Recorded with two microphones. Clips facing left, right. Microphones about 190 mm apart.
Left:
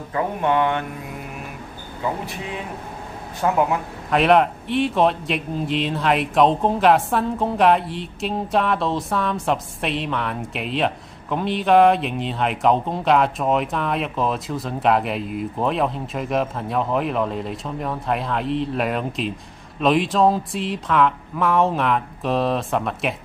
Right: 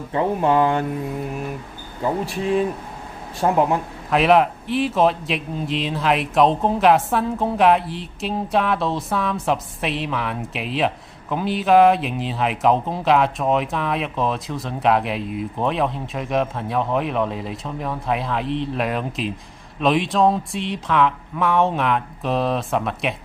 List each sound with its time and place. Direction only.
0.1 s mantra: 30° right (ahead or behind)
3.4 s mantra: 35° right (ahead or behind)
4.1 s a man's voice: centre (ahead or behind)